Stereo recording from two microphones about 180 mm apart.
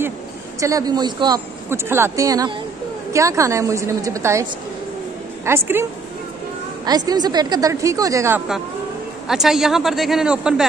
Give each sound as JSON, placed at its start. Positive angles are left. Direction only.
{"t": 0.6, "sound": "a woman's voice", "side_deg": -20}
{"t": 6.9, "sound": "a woman's voice", "side_deg": -20}
{"t": 9.3, "sound": "a woman's voice", "side_deg": 0}